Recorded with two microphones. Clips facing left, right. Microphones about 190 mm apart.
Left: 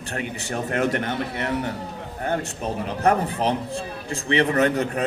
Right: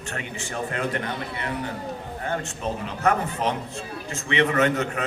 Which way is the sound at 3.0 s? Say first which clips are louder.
Left 2 dB; 35° left (ahead or behind).